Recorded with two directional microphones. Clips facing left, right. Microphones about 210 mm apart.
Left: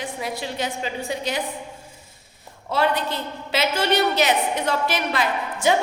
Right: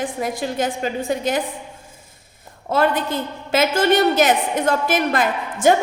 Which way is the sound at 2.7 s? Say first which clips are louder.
Right 3 dB; 50° right (ahead or behind).